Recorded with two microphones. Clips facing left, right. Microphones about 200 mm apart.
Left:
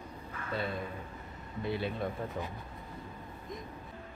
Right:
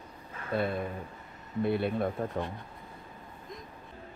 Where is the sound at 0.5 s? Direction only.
55° right (ahead or behind).